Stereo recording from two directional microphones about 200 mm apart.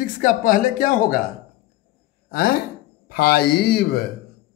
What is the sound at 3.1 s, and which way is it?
Speech, 50° left (ahead or behind).